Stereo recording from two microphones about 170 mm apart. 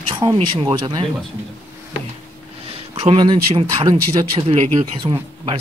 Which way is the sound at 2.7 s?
35° right (ahead or behind).